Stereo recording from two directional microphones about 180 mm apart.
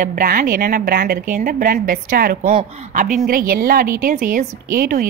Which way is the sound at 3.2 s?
55° right (ahead or behind).